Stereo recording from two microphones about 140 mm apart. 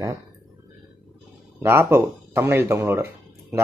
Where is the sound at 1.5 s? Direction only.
15° right (ahead or behind).